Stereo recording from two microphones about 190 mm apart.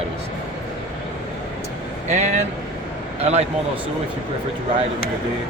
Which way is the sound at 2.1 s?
40° right (ahead or behind).